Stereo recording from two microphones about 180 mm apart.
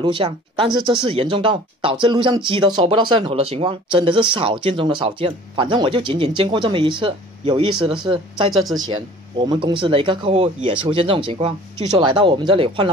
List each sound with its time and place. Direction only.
0.0 s speech: 30° right (ahead or behind)